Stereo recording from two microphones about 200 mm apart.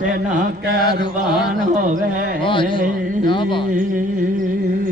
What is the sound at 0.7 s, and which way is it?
Speech, 50° right (ahead or behind).